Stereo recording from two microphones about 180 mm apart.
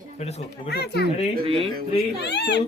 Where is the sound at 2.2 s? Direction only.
70° left (ahead or behind).